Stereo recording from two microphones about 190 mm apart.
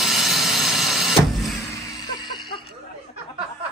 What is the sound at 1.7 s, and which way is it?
Music, 20° left (ahead or behind).